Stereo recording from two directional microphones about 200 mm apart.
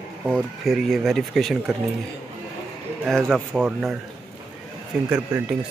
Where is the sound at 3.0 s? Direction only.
Centre (ahead or behind).